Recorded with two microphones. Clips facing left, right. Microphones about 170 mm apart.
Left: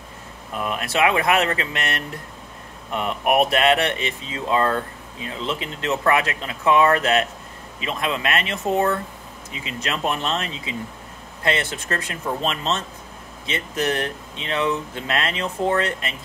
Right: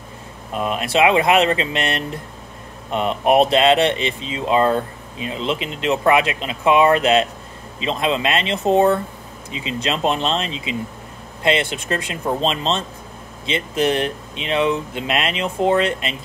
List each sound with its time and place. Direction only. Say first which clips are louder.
0.5 s speech: right 4 dB; 20° right (ahead or behind)